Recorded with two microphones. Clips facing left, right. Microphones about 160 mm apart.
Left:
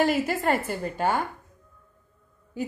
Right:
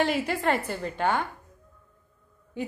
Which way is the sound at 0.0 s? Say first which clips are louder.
Left 3 dB; centre (ahead or behind).